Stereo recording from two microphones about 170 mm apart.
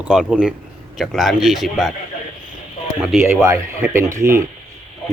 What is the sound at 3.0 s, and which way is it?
Speech, centre (ahead or behind).